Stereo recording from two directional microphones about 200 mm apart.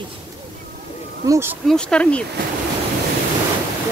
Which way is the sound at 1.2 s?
15° right (ahead or behind).